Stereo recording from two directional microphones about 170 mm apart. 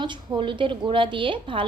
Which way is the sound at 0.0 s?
30° right (ahead or behind).